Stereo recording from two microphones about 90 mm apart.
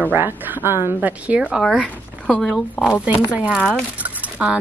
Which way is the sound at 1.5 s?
5° right (ahead or behind).